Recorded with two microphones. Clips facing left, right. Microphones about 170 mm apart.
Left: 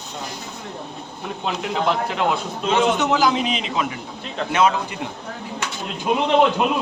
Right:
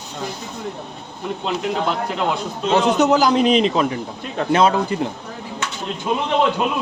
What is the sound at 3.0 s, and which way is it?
Speech, 40° right (ahead or behind).